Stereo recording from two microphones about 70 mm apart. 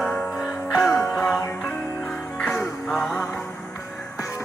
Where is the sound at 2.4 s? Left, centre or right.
Centre.